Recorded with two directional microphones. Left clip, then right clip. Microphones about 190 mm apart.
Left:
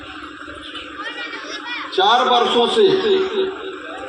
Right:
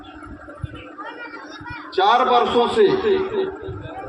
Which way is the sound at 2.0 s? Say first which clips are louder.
Left 1 dB; 20° left (ahead or behind).